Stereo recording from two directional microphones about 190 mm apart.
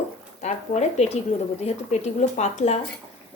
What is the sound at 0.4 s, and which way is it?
A woman's voice, 35° left (ahead or behind).